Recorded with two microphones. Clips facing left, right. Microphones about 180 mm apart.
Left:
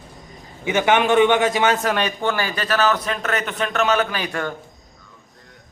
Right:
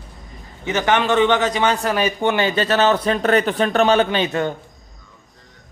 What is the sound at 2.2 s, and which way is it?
Speech, 20° right (ahead or behind).